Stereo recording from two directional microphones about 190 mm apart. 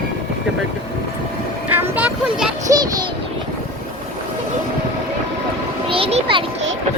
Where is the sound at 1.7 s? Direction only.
10° right (ahead or behind).